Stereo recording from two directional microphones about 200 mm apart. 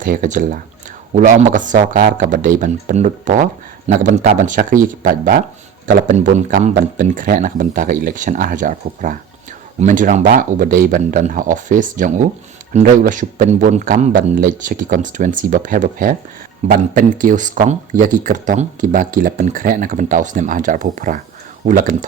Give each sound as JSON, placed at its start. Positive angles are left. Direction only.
{"t": 0.0, "sound": "speech", "side_deg": -40}